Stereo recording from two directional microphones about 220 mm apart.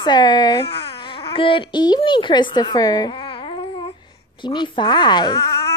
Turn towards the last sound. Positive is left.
turn(degrees=15)  # may be behind; listen again after turning